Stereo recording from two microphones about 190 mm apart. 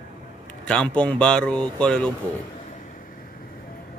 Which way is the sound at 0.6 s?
5° left (ahead or behind).